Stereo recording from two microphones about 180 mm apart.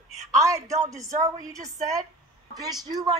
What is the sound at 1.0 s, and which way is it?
Speech, 20° right (ahead or behind).